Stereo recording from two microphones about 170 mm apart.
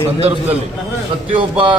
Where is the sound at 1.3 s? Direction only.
30° right (ahead or behind).